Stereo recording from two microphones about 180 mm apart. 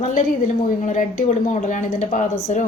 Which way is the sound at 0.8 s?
45° left (ahead or behind).